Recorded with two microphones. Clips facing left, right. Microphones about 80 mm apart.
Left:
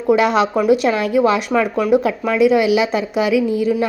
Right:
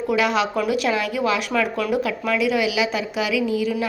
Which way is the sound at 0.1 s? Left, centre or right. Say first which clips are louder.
Left 7 dB; left.